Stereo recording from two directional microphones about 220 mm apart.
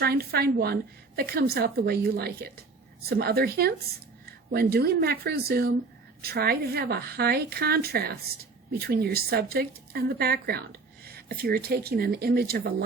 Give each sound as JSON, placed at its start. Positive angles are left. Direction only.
{"t": 0.0, "sound": "speech", "side_deg": -45}